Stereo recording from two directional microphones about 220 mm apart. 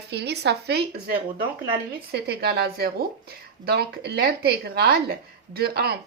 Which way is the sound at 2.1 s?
45° right (ahead or behind).